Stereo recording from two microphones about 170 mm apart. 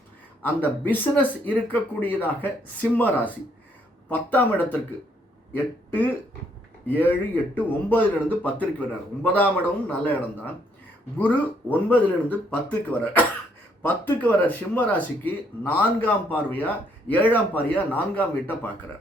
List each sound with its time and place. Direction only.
0.4 s speech: 10° left (ahead or behind)
6.8 s speech: 10° left (ahead or behind)